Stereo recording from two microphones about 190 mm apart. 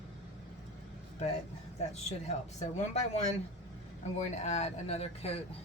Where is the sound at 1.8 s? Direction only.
35° left (ahead or behind).